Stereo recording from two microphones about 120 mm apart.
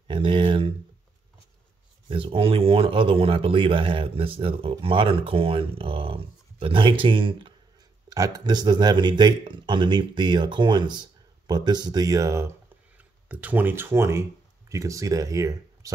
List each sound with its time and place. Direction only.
0.1 s speech: 40° right (ahead or behind)
2.0 s speech: 50° right (ahead or behind)
8.1 s speech: 30° right (ahead or behind)
12.9 s speech: 10° right (ahead or behind); by 15.9 s 30° right (ahead or behind)